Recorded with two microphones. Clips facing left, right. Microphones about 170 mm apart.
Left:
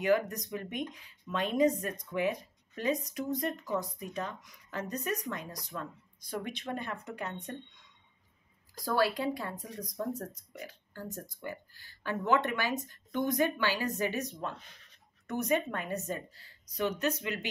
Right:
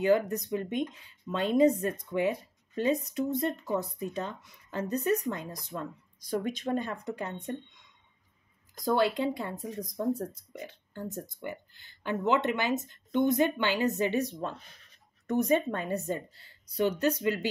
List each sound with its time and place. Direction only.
0.0 s a woman's voice: 30° right (ahead or behind)
8.8 s a woman's voice: 25° right (ahead or behind)